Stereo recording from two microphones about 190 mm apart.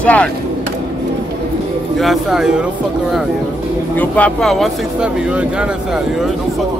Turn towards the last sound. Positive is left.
turn(degrees=0)  # may be behind; listen again after turning